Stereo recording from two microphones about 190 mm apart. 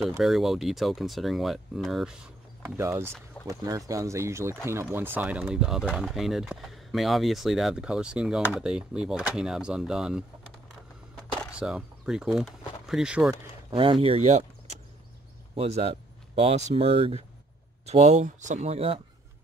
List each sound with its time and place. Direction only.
0.2 s speech: centre (ahead or behind)
2.6 s speech: 15° right (ahead or behind)
11.5 s speech: 5° right (ahead or behind)
13.7 s speech: 25° right (ahead or behind)